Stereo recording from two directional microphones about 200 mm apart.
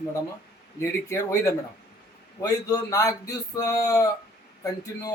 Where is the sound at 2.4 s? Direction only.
15° left (ahead or behind).